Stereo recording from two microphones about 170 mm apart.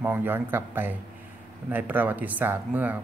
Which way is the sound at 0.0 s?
10° right (ahead or behind).